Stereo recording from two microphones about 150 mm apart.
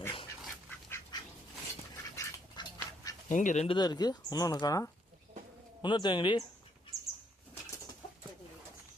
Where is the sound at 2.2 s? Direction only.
25° left (ahead or behind).